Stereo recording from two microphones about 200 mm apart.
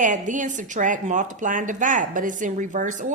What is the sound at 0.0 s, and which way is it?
A woman's voice, 40° right (ahead or behind).